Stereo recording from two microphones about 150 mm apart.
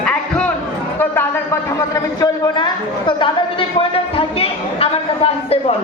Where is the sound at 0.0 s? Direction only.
5° left (ahead or behind).